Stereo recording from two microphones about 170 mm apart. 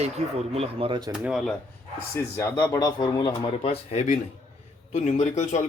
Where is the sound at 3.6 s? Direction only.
40° left (ahead or behind).